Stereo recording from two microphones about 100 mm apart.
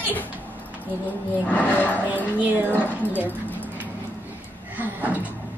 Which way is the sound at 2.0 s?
15° right (ahead or behind).